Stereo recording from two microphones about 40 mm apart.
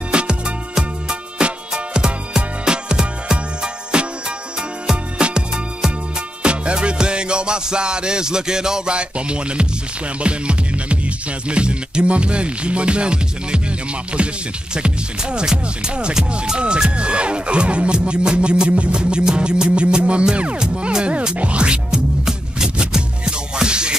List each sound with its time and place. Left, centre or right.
0.1 s music: right
1.4 s music: right
11.4 s speech: right
21.4 s music: right